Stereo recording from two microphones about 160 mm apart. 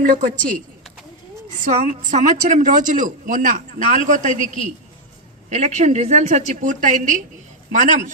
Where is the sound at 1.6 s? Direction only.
50° right (ahead or behind).